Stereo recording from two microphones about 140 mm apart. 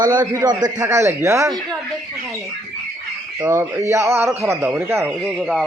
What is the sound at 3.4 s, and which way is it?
Speech, 20° right (ahead or behind).